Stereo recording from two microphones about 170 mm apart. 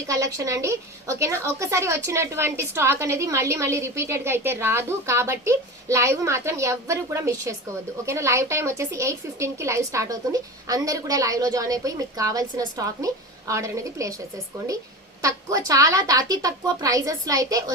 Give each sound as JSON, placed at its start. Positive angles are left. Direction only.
{"t": 0.1, "sound": "a woman's voice", "side_deg": -20}
{"t": 15.2, "sound": "a woman's voice", "side_deg": -20}